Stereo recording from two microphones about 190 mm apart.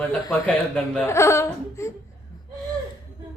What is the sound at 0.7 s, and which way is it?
Speech, 5° left (ahead or behind).